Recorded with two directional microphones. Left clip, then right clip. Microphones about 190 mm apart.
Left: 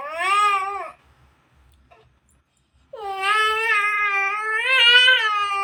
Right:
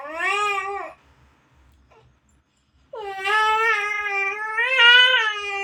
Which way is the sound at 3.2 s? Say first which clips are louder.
Right 1 dB; 15° right (ahead or behind).